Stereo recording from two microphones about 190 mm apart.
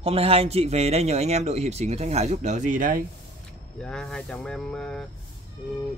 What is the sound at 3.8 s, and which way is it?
Speech, 5° left (ahead or behind).